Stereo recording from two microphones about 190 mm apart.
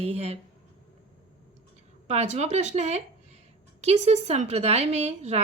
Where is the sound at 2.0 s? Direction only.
35° right (ahead or behind).